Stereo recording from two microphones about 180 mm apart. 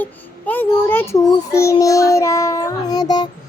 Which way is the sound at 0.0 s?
10° left (ahead or behind).